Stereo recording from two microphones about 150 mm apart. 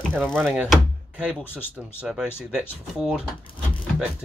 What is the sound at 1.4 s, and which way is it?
Speech, 15° left (ahead or behind).